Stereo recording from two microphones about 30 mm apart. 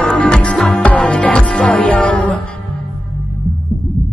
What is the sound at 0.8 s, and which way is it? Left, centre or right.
Music, left.